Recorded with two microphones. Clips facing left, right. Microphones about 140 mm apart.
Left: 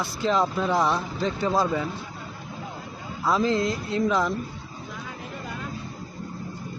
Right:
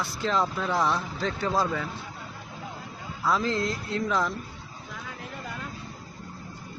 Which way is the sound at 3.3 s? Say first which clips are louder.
Left 4 dB; 20° left (ahead or behind).